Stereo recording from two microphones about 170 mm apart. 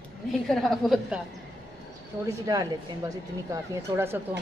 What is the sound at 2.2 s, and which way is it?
Speech, 20° right (ahead or behind).